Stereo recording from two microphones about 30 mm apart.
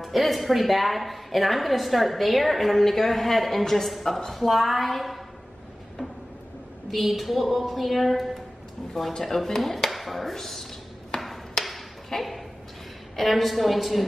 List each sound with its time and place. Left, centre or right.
0.0 s a woman's voice: centre
6.9 s a woman's voice: centre
11.1 s a sound: centre
11.6 s ping: centre
13.1 s a woman's voice: centre